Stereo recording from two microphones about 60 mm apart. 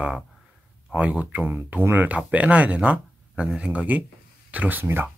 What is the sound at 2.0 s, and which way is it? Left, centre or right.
Speech, right.